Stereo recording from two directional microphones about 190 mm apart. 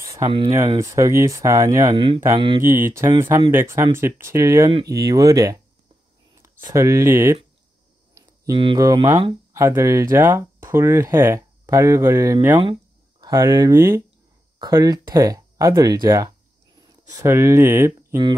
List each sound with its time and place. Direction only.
0.0 s a sound: 15° right (ahead or behind)
0.5 s speech: 15° right (ahead or behind)
2.9 s speech: 15° right (ahead or behind)